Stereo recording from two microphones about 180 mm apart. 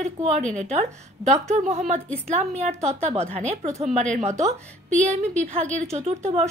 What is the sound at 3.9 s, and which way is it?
Speech, 40° right (ahead or behind).